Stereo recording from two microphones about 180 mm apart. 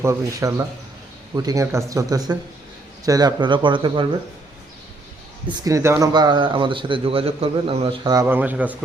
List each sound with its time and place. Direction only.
0.0 s a man's voice: 15° right (ahead or behind)
5.5 s a man's voice: 20° right (ahead or behind)